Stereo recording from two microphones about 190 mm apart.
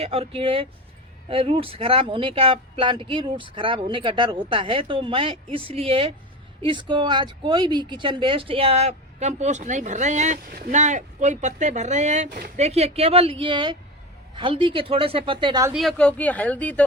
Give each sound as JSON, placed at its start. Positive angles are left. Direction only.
{"t": 0.0, "sound": "speech", "side_deg": -30}
{"t": 15.7, "sound": "a woman's voice", "side_deg": 0}